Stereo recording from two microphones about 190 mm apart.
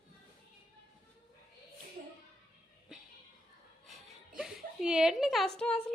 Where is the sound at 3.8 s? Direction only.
Centre (ahead or behind).